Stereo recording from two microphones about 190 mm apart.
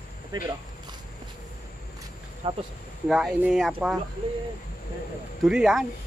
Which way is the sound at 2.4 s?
30° right (ahead or behind).